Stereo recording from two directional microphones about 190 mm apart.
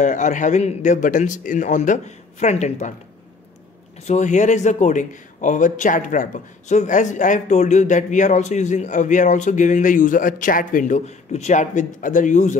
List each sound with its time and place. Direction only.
0.0 s speech: 40° left (ahead or behind)
4.1 s speech: 40° left (ahead or behind)